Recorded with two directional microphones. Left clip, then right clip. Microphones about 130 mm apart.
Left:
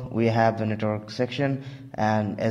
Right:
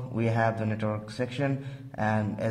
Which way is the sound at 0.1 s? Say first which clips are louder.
Left 6 dB; 25° left (ahead or behind).